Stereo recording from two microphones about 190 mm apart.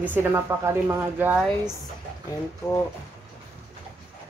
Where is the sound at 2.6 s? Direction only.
10° left (ahead or behind).